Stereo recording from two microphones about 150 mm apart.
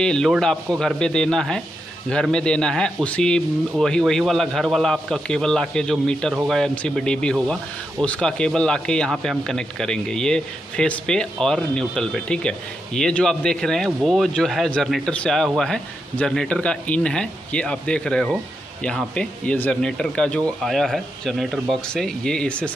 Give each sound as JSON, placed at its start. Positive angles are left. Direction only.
{"t": 0.0, "sound": "a man's voice", "side_deg": 5}